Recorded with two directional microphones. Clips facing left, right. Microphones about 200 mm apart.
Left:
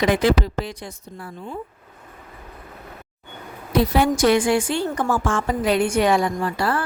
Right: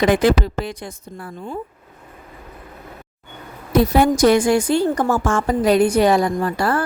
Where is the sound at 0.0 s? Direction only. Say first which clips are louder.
Right 3 dB; 50° right (ahead or behind).